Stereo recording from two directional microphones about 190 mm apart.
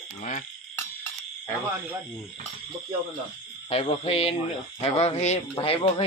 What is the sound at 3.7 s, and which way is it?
Music, 30° left (ahead or behind).